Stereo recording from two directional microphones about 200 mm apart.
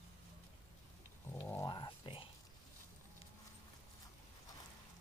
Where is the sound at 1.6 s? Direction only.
25° left (ahead or behind).